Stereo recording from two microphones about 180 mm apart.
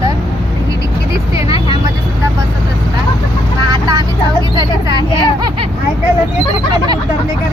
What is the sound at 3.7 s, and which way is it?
Speech, 20° right (ahead or behind).